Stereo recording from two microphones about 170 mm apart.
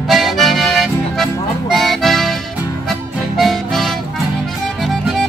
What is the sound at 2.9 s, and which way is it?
Harmonica, centre (ahead or behind).